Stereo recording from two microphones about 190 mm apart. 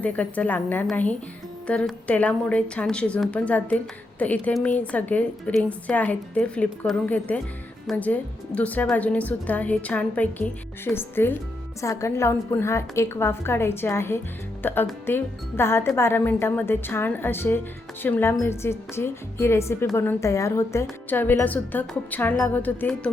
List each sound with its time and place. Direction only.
0.0 s speech: 10° left (ahead or behind)